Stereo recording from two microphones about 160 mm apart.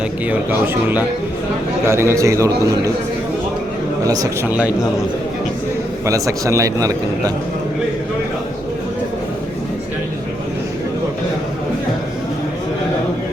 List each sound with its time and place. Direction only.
0.3 s a man's voice: 10° right (ahead or behind)
4.0 s a man's voice: 20° right (ahead or behind)
4.4 s speech: 10° right (ahead or behind)
6.1 s a man's voice: 20° right (ahead or behind)